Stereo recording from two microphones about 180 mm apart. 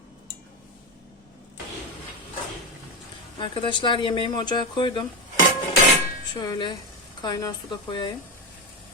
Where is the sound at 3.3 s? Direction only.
30° left (ahead or behind).